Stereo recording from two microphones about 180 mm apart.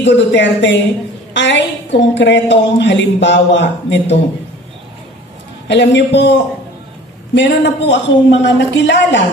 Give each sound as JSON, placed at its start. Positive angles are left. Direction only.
{"t": 0.0, "sound": "a woman's voice", "side_deg": 80}
{"t": 5.7, "sound": "speech", "side_deg": 75}
{"t": 7.3, "sound": "a woman's voice", "side_deg": 75}